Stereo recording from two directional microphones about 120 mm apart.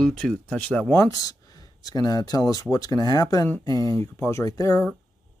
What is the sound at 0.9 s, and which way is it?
Speech, 30° left (ahead or behind).